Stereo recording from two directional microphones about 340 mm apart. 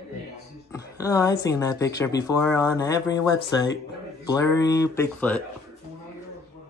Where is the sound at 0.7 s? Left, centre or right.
Centre.